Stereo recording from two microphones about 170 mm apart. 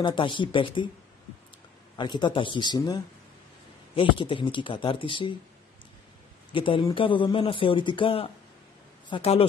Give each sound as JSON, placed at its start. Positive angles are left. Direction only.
{"t": 0.0, "sound": "speech", "side_deg": 30}
{"t": 2.0, "sound": "speech", "side_deg": 25}
{"t": 6.5, "sound": "a man's voice", "side_deg": 30}